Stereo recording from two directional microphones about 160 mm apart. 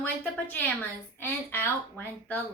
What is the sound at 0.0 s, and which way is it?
Speech, 10° left (ahead or behind).